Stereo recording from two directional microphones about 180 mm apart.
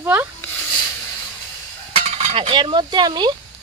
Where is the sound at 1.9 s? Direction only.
30° right (ahead or behind).